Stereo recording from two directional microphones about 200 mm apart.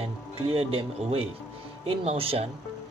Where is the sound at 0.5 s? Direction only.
30° right (ahead or behind).